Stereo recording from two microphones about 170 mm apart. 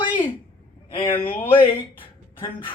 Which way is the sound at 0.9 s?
30° left (ahead or behind).